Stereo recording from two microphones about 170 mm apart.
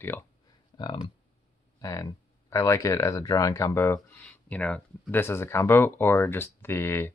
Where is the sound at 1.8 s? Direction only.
20° left (ahead or behind).